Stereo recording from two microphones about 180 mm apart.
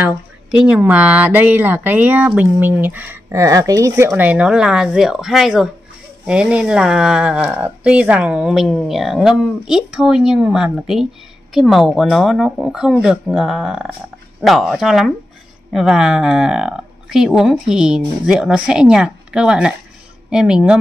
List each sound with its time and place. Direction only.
0.7 s speech: 10° right (ahead or behind)